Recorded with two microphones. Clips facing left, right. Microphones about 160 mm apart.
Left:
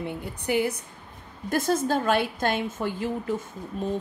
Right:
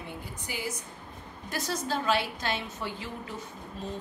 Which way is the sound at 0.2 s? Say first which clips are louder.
Left 13 dB; 60° left (ahead or behind).